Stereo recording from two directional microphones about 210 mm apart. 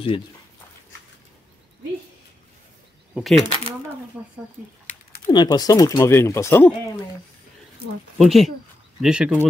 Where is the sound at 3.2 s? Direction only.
Centre (ahead or behind).